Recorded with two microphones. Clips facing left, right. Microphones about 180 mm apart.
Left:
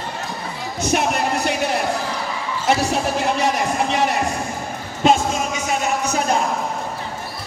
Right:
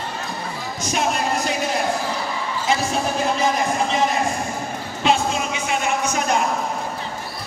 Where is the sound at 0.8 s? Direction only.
65° left (ahead or behind).